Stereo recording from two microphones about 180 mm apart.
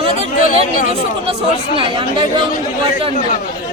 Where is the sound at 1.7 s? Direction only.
30° right (ahead or behind).